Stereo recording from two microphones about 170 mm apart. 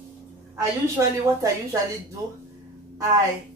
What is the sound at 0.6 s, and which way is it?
A woman's voice, 20° right (ahead or behind).